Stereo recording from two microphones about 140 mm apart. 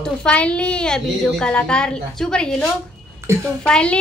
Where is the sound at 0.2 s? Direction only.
10° left (ahead or behind).